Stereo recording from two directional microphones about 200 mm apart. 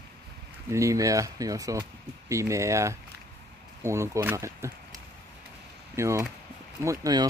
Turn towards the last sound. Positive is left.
turn(degrees=-20)  # may be behind; listen again after turning